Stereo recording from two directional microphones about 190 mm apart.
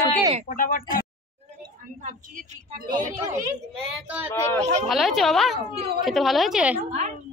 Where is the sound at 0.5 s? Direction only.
45° left (ahead or behind).